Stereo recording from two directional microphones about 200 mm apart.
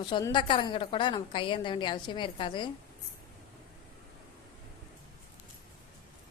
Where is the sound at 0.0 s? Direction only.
20° left (ahead or behind).